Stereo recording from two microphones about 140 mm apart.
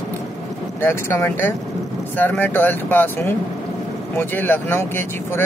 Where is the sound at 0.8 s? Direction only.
15° left (ahead or behind).